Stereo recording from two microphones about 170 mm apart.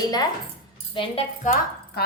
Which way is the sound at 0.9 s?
35° left (ahead or behind).